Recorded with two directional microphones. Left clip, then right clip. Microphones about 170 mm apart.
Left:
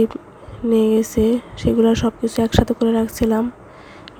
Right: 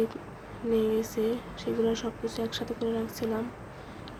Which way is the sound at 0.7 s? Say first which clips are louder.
Left 11 dB; 55° left (ahead or behind).